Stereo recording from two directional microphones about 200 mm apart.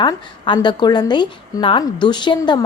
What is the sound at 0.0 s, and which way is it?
A woman's voice, 20° left (ahead or behind).